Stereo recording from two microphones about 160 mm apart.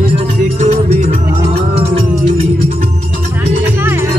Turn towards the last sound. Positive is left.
turn(degrees=-15)  # may be behind; listen again after turning